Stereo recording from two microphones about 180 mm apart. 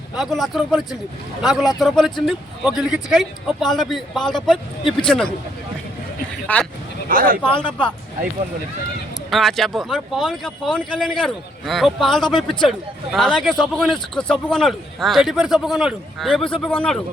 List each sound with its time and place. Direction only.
0.2 s a man's voice: centre (ahead or behind)
6.5 s speech: 10° left (ahead or behind)
7.1 s speech: 50° right (ahead or behind)
9.3 s a man's voice: centre (ahead or behind)